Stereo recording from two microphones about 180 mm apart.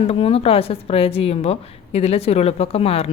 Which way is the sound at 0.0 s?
35° left (ahead or behind).